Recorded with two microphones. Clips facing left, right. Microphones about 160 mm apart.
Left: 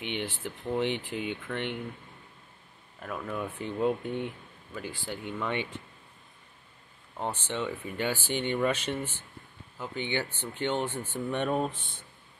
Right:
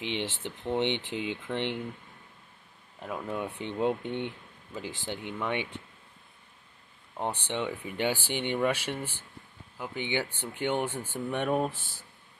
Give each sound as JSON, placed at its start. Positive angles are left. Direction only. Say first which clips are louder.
{"t": 0.0, "sound": "speech", "louder": "right 1 dB", "side_deg": -25}
{"t": 1.5, "sound": "speech", "louder": "right 4 dB", "side_deg": -5}
{"t": 3.0, "sound": "speech", "louder": "right 1 dB", "side_deg": -20}
{"t": 7.2, "sound": "speech", "louder": "right 1 dB", "side_deg": -15}